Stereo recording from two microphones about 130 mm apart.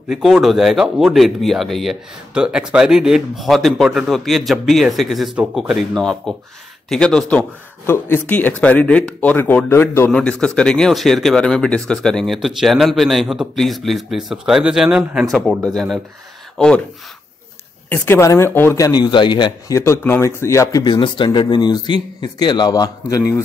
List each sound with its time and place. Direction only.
0.1 s speech: centre (ahead or behind)
17.8 s speech: 15° left (ahead or behind); by 19.5 s 35° left (ahead or behind)
19.7 s speech: 20° left (ahead or behind)